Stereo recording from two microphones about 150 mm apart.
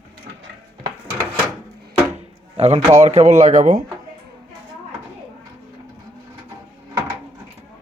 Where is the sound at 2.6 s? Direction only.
45° right (ahead or behind).